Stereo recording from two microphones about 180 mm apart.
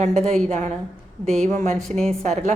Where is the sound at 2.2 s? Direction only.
40° right (ahead or behind).